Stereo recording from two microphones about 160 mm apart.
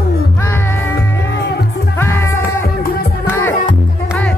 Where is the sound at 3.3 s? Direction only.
15° left (ahead or behind).